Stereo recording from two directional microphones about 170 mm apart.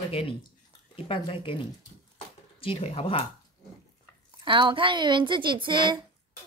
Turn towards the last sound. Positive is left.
turn(degrees=-30)  # may be behind; listen again after turning